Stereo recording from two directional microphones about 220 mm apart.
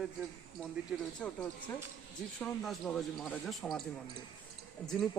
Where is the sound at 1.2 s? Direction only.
5° left (ahead or behind).